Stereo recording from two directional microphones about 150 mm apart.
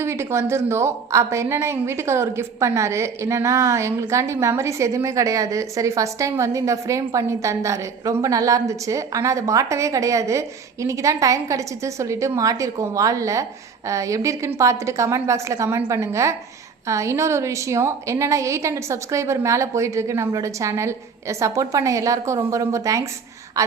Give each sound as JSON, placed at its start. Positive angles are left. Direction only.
{"t": 0.0, "sound": "a woman's voice", "side_deg": -20}